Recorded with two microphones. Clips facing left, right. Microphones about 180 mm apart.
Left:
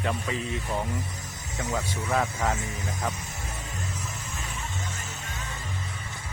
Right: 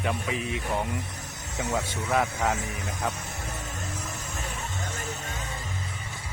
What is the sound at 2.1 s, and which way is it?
Speech, 10° right (ahead or behind).